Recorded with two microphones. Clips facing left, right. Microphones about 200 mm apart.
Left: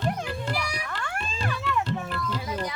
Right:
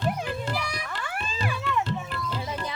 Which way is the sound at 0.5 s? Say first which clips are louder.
Even; 10° left (ahead or behind).